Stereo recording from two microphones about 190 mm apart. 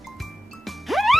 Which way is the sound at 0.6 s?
Centre (ahead or behind).